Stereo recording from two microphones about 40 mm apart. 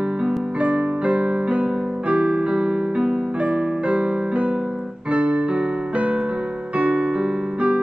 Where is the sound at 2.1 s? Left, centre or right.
Right.